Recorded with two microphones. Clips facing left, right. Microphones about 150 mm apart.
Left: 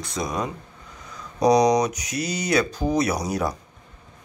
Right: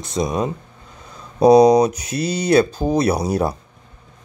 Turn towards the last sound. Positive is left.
turn(degrees=-30)  # may be behind; listen again after turning